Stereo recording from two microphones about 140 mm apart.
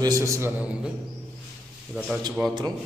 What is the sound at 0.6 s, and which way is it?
Speech, 10° right (ahead or behind).